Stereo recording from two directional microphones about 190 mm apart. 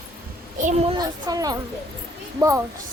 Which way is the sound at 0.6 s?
35° right (ahead or behind).